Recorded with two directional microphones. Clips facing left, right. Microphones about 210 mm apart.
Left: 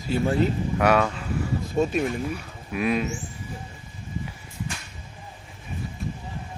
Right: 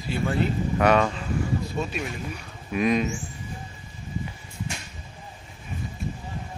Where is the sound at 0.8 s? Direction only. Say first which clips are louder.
Even; 5° left (ahead or behind).